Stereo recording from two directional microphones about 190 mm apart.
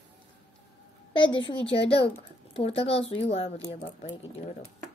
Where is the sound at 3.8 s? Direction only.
45° left (ahead or behind).